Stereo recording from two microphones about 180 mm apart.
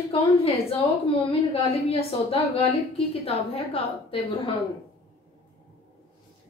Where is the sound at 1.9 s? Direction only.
30° left (ahead or behind).